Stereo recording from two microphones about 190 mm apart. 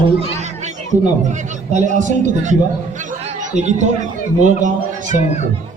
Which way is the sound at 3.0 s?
40° right (ahead or behind).